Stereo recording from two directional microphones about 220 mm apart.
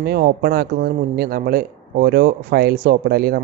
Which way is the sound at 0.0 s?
45° right (ahead or behind).